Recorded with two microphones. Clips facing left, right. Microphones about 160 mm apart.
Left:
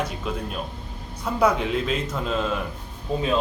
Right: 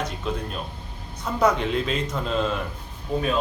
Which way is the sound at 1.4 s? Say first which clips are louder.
Even; 5° left (ahead or behind).